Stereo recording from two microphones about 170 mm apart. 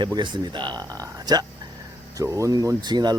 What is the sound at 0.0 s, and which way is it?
Speech, 25° right (ahead or behind).